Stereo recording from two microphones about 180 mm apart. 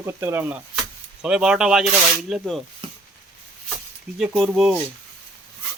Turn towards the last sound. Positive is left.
turn(degrees=-5)  # may be behind; listen again after turning